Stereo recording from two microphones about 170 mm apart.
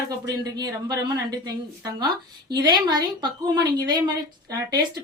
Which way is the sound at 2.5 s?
25° right (ahead or behind).